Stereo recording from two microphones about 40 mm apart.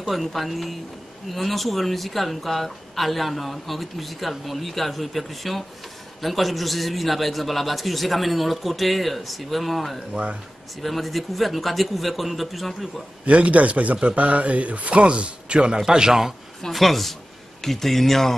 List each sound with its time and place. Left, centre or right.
0.0 s speech: centre
13.2 s a man's voice: right
15.8 s a man's voice: centre
16.7 s speech: centre